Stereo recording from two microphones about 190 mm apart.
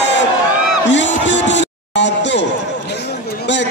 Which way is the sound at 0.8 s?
70° left (ahead or behind).